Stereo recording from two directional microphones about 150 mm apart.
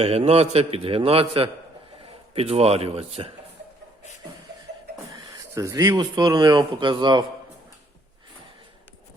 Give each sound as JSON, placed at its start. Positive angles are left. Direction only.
{"t": 0.0, "sound": "a man's voice", "side_deg": -40}
{"t": 5.4, "sound": "speech", "side_deg": -20}